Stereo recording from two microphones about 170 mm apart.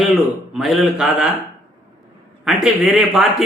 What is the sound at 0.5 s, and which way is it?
Speech, centre (ahead or behind).